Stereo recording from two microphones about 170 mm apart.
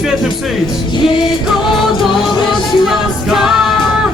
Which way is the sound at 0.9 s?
25° left (ahead or behind).